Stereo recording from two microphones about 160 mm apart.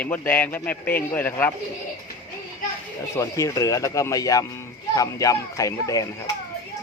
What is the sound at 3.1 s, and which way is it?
Speech, 20° left (ahead or behind).